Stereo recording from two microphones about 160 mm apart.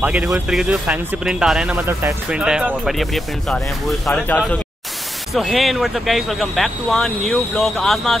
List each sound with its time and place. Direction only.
0.0 s speech: 5° right (ahead or behind)
1.9 s speech: 15° right (ahead or behind); by 8.2 s centre (ahead or behind)